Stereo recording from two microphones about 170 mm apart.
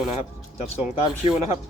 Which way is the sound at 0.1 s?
40° left (ahead or behind).